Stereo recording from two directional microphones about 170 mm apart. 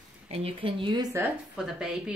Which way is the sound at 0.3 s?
35° right (ahead or behind).